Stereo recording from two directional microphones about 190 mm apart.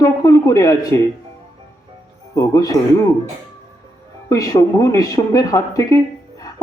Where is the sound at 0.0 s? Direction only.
20° left (ahead or behind).